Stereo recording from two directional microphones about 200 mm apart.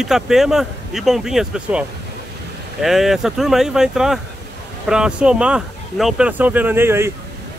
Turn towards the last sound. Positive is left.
turn(degrees=-10)  # may be behind; listen again after turning